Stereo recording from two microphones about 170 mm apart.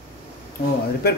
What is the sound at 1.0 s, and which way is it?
Speech, 70° left (ahead or behind).